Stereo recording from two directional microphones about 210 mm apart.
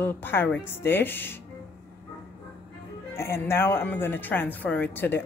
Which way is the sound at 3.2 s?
10° left (ahead or behind).